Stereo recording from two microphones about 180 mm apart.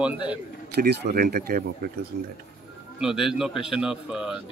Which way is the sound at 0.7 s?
60° right (ahead or behind).